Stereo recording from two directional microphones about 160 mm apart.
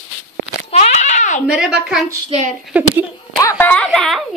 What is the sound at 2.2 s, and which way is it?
Speech, 45° right (ahead or behind).